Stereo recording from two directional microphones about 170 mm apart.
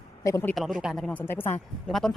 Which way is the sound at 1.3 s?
15° left (ahead or behind).